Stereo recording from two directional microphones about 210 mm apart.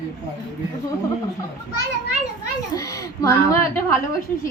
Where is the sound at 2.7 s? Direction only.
15° left (ahead or behind).